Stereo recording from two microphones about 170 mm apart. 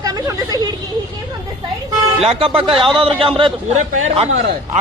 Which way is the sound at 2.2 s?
35° right (ahead or behind).